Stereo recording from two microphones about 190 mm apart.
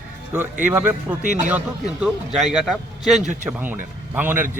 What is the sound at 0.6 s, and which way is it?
Speech, 10° right (ahead or behind).